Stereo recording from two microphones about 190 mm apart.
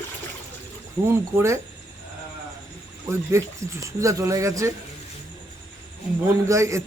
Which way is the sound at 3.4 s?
15° right (ahead or behind).